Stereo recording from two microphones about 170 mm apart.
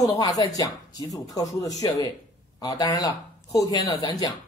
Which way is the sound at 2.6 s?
20° left (ahead or behind).